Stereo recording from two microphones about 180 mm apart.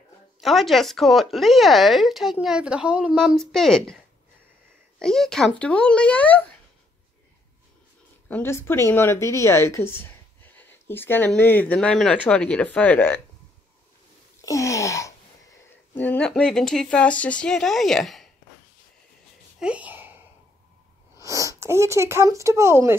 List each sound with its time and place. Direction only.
0.4 s speech: centre (ahead or behind)
8.3 s speech: 15° left (ahead or behind)
14.4 s a sound: 15° left (ahead or behind)
15.9 s speech: 10° left (ahead or behind)
19.6 s a sound: 5° right (ahead or behind)
21.2 s speech: 15° right (ahead or behind)